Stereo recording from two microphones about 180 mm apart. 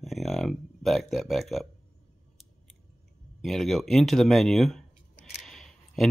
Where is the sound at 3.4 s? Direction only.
Centre (ahead or behind).